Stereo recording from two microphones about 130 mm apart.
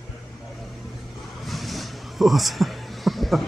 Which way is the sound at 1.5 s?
Centre (ahead or behind).